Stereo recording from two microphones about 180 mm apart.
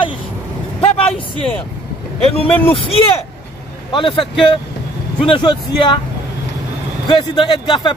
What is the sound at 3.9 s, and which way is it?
Speech, 30° left (ahead or behind).